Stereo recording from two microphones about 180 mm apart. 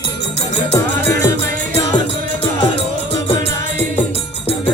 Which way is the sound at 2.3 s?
35° left (ahead or behind).